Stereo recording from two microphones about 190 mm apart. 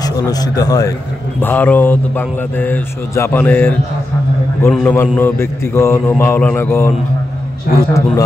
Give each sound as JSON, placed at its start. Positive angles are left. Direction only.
{"t": 0.0, "sound": "a man's voice", "side_deg": 20}
{"t": 7.7, "sound": "a man's voice", "side_deg": 50}